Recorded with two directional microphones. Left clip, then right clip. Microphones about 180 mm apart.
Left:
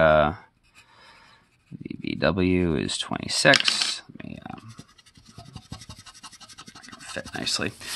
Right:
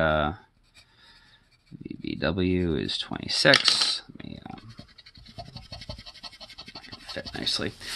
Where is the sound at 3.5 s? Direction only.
15° left (ahead or behind).